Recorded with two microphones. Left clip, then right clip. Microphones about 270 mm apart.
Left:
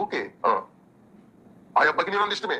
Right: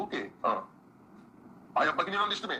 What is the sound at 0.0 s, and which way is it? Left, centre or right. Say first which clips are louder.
Throat clearing: left 7 dB; centre.